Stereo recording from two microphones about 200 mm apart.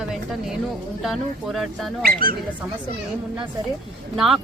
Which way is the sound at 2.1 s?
45° right (ahead or behind).